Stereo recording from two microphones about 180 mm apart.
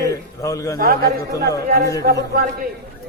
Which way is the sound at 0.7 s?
55° right (ahead or behind).